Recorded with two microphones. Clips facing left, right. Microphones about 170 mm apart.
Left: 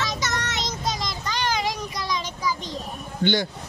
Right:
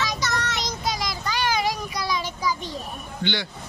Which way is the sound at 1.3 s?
5° right (ahead or behind).